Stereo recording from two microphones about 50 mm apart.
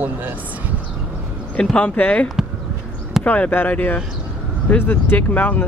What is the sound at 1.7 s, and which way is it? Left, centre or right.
Speech, left.